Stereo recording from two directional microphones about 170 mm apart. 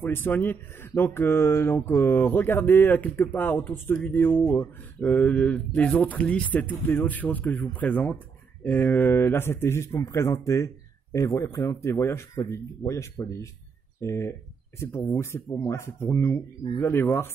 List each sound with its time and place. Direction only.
0.0 s speech: 10° left (ahead or behind)